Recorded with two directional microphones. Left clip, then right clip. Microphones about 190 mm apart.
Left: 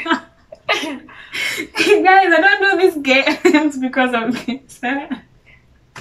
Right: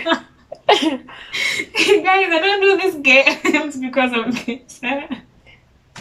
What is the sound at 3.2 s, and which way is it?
Speech, 15° right (ahead or behind).